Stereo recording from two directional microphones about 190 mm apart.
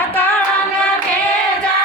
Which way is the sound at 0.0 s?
10° left (ahead or behind).